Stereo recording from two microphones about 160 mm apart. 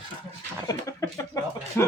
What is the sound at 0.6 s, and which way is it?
Speech, 20° left (ahead or behind).